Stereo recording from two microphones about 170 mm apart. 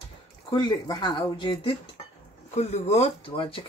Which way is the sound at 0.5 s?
25° left (ahead or behind).